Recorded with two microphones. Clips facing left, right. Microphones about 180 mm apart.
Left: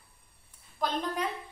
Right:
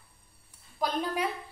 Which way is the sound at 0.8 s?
10° right (ahead or behind).